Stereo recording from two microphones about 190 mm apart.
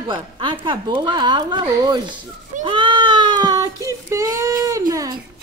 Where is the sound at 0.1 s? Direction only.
25° right (ahead or behind).